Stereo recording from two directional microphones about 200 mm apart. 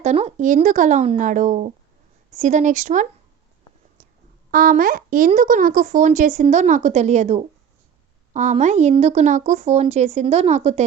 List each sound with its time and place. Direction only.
0.0 s speech: 35° right (ahead or behind)
4.5 s speech: 45° right (ahead or behind)